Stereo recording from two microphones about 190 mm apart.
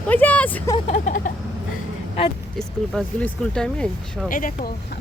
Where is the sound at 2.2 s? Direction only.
30° left (ahead or behind).